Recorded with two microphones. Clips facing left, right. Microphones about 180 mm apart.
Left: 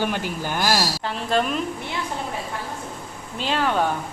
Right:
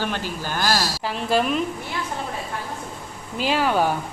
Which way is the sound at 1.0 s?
5° right (ahead or behind).